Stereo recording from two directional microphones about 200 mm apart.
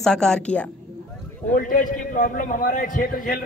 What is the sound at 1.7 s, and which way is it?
A man's voice, 45° left (ahead or behind).